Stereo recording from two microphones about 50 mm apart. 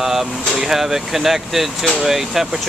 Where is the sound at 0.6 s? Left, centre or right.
Centre.